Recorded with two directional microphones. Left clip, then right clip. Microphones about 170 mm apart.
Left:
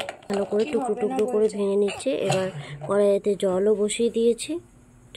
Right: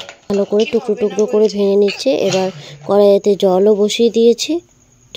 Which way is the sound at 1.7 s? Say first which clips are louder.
Right 10 dB; 35° right (ahead or behind).